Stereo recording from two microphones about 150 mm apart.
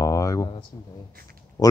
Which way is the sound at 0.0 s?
20° left (ahead or behind).